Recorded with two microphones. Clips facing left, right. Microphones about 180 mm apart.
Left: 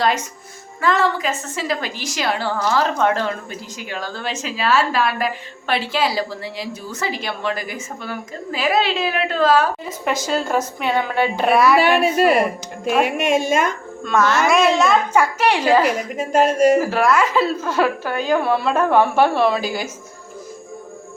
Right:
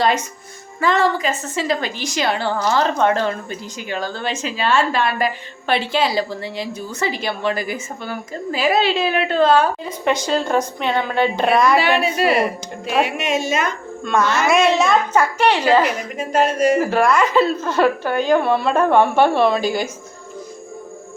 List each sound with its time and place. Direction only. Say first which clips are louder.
0.0 s a woman's voice: right 1 dB; centre (ahead or behind)
11.8 s speech: left 2 dB; 50° left (ahead or behind)
14.0 s a woman's voice: left 1 dB; centre (ahead or behind)
15.1 s a woman's voice: right 1 dB; 10° left (ahead or behind)
16.5 s speech: left 4 dB; 45° left (ahead or behind)
16.7 s a woman's voice: even; centre (ahead or behind)